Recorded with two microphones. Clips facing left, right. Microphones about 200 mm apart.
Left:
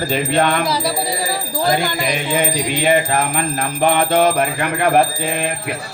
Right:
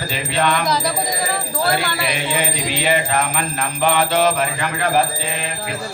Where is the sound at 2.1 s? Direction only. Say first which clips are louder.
Left 4 dB; 45° left (ahead or behind).